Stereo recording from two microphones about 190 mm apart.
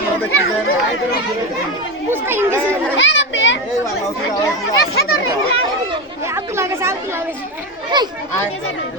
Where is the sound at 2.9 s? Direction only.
75° left (ahead or behind).